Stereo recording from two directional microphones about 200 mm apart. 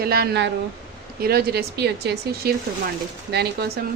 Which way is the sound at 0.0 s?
50° right (ahead or behind).